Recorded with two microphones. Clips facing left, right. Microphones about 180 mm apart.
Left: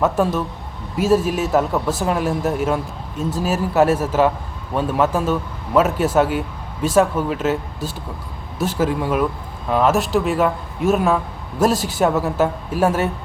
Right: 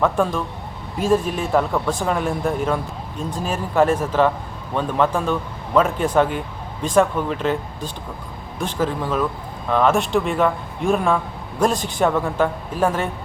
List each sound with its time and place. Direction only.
0.0 s speech: 5° left (ahead or behind)